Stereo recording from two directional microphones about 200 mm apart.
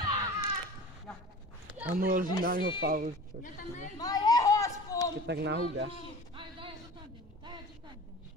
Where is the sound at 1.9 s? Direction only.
45° right (ahead or behind).